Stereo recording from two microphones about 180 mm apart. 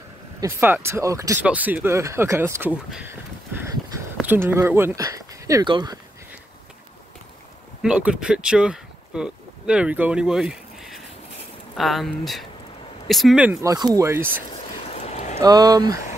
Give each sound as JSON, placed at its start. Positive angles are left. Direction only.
{"t": 0.4, "sound": "speech", "side_deg": -10}
{"t": 7.8, "sound": "speech", "side_deg": -5}
{"t": 14.7, "sound": "vehicle", "side_deg": 35}
{"t": 15.3, "sound": "speech", "side_deg": -20}